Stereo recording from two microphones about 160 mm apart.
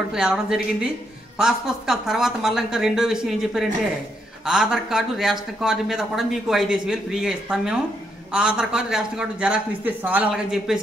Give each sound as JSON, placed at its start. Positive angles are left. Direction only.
{"t": 0.1, "sound": "speech", "side_deg": -5}